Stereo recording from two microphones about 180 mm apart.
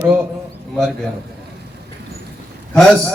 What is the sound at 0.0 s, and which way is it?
Speech, 10° right (ahead or behind).